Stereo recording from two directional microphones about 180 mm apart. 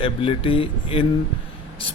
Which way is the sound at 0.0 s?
30° left (ahead or behind).